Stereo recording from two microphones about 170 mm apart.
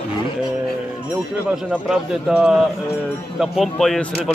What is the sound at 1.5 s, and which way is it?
A man's voice, 5° right (ahead or behind).